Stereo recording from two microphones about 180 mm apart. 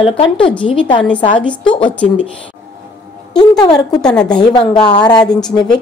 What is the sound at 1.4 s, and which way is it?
Speech, 5° left (ahead or behind).